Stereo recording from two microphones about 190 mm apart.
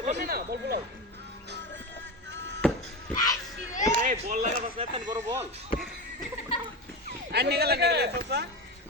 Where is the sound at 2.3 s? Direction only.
75° right (ahead or behind).